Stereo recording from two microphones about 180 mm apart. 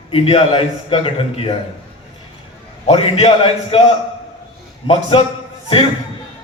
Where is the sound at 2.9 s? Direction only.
35° left (ahead or behind).